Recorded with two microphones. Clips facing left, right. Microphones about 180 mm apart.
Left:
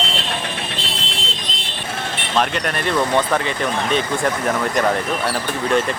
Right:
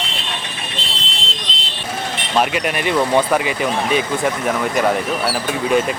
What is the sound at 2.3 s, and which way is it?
Speech, 10° right (ahead or behind).